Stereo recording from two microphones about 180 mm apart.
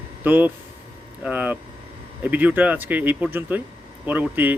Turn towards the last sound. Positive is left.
turn(degrees=-10)  # may be behind; listen again after turning